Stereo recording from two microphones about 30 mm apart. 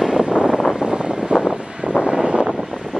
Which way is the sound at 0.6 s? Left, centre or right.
Right.